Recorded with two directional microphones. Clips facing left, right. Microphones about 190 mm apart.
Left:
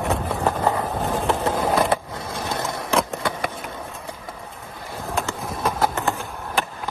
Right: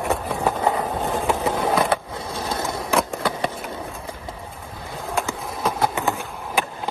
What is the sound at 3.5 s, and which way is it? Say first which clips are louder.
Run: right 2 dB; centre (ahead or behind).